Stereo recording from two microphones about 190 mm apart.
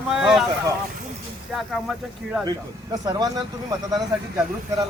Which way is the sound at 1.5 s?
Centre (ahead or behind).